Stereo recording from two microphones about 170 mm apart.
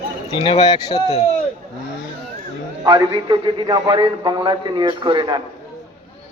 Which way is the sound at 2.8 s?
25° right (ahead or behind).